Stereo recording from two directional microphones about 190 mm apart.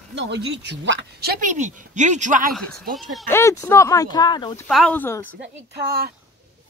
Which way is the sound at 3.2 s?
15° left (ahead or behind).